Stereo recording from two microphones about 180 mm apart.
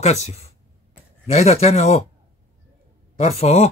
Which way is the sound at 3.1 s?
35° left (ahead or behind).